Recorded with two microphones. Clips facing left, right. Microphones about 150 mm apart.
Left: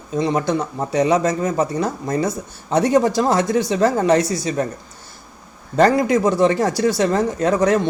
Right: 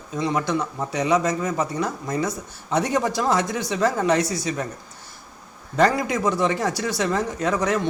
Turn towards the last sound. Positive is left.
turn(degrees=30)  # may be behind; listen again after turning